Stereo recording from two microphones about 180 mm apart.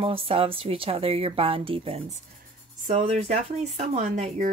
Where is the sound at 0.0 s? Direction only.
30° right (ahead or behind).